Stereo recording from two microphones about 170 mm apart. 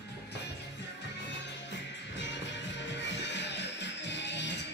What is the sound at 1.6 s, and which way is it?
Music, 90° left.